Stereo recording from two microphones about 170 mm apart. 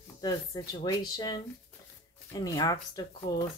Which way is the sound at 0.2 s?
20° left (ahead or behind).